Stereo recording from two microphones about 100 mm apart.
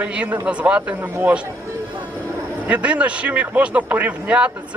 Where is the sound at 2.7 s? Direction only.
15° right (ahead or behind).